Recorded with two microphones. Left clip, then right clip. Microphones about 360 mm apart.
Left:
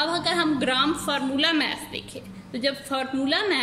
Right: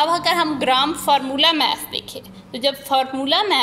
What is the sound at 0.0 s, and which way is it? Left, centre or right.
A woman's voice, centre.